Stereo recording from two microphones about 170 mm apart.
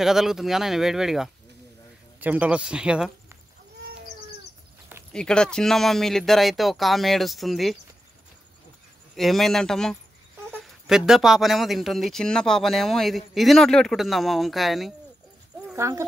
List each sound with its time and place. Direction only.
0.0 s speech: centre (ahead or behind)
5.1 s speech: 5° left (ahead or behind)
9.1 s speech: centre (ahead or behind)
15.6 s a sound: 15° right (ahead or behind)